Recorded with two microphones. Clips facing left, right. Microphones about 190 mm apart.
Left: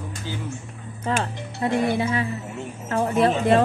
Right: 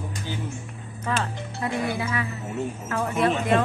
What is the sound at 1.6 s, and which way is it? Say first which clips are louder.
A woman's voice: left 5 dB; 25° left (ahead or behind).